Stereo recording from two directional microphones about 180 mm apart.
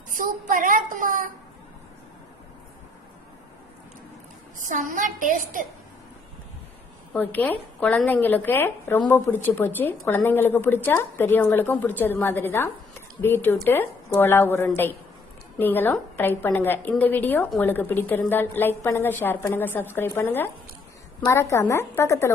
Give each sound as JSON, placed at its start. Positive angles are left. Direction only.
{"t": 0.1, "sound": "a woman's voice", "side_deg": -45}
{"t": 4.5, "sound": "a woman's voice", "side_deg": -45}
{"t": 7.1, "sound": "a woman's voice", "side_deg": 10}